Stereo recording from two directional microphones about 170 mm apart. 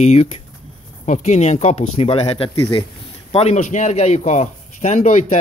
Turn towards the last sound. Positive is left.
turn(degrees=45)  # may be behind; listen again after turning